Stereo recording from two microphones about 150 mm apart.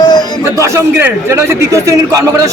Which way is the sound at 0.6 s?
15° right (ahead or behind).